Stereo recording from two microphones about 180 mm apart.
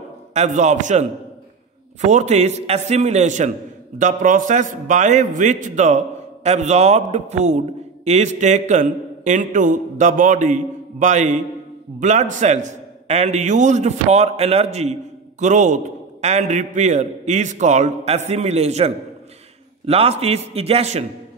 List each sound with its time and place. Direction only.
0.3 s a man's voice: 40° right (ahead or behind)